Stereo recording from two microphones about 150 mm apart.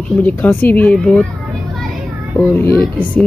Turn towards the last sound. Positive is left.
turn(degrees=15)  # may be behind; listen again after turning